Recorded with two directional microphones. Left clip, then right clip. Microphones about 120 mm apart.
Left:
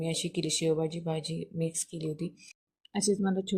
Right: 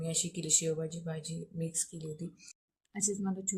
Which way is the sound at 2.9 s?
40° left (ahead or behind).